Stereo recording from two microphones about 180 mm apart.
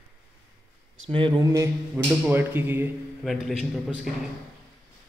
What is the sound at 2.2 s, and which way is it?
Speech, 10° right (ahead or behind).